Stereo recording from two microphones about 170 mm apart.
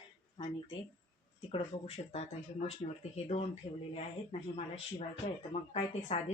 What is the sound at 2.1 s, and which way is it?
Speech, 40° left (ahead or behind).